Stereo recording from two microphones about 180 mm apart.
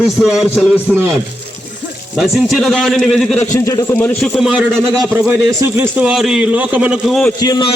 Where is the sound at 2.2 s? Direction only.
Centre (ahead or behind).